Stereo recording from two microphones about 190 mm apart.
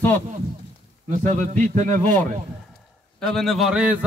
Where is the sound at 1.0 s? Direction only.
40° right (ahead or behind).